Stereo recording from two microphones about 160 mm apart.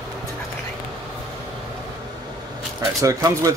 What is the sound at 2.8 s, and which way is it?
Speech, 20° right (ahead or behind).